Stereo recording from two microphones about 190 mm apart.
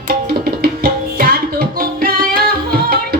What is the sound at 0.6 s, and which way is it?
Tabla, 50° right (ahead or behind).